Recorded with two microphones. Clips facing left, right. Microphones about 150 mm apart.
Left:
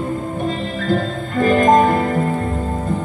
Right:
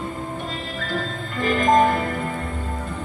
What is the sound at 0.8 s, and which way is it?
Music, 45° left (ahead or behind).